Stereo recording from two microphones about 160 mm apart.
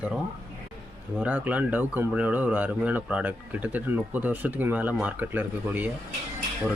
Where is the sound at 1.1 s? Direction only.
10° right (ahead or behind).